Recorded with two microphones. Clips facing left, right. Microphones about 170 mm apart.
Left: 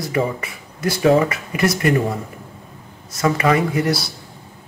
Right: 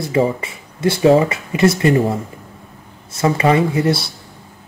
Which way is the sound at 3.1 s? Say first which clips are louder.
Right 3 dB; 25° right (ahead or behind).